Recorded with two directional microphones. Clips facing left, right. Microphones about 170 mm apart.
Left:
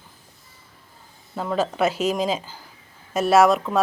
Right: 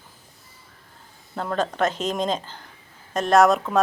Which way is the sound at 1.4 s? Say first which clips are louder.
Left 1 dB; 5° left (ahead or behind).